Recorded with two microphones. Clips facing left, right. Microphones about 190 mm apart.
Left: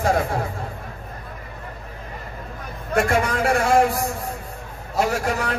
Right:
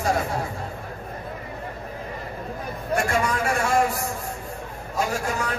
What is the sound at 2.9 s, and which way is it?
Speech, 55° left (ahead or behind).